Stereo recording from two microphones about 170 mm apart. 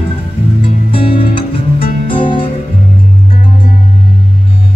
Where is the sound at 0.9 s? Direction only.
30° left (ahead or behind).